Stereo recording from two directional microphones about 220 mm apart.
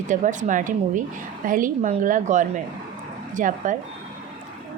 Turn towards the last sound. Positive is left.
turn(degrees=-35)  # may be behind; listen again after turning